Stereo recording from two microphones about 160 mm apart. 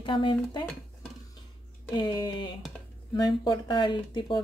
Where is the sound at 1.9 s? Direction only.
30° left (ahead or behind).